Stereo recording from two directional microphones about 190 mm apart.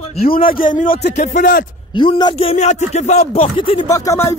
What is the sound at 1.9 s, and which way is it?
Speech, 25° left (ahead or behind).